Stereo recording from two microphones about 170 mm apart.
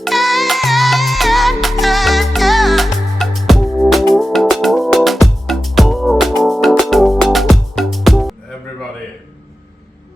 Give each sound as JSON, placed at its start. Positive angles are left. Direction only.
{"t": 0.0, "sound": "music", "side_deg": 0}